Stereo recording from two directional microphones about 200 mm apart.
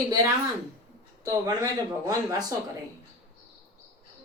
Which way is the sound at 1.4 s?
15° right (ahead or behind).